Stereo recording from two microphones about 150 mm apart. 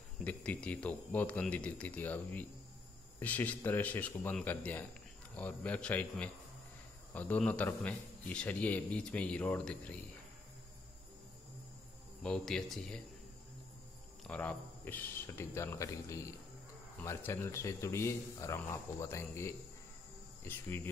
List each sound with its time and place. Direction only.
0.2 s a man's voice: 10° left (ahead or behind)
12.2 s speech: 5° left (ahead or behind)
14.2 s a man's voice: 10° left (ahead or behind)